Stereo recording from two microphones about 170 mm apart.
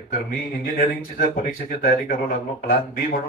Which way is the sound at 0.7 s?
60° left (ahead or behind).